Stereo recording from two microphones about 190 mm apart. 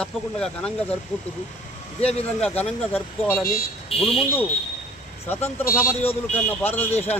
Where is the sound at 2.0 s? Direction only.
35° left (ahead or behind).